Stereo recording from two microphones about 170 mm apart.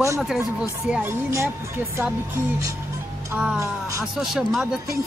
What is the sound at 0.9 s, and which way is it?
Speech, 10° right (ahead or behind).